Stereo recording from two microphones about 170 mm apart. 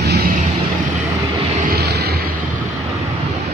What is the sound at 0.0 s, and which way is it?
Vehicle, 75° right (ahead or behind).